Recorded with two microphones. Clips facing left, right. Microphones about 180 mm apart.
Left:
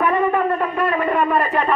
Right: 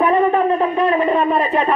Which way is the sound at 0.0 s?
25° right (ahead or behind).